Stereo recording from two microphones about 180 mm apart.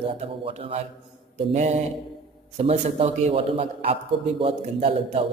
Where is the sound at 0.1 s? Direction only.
35° right (ahead or behind).